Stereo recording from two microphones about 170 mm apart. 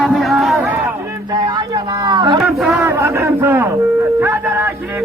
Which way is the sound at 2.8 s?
15° right (ahead or behind).